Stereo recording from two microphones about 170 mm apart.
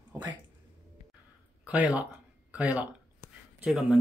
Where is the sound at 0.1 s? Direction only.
25° right (ahead or behind).